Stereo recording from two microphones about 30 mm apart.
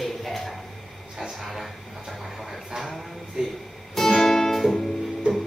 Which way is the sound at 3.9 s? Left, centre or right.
Centre.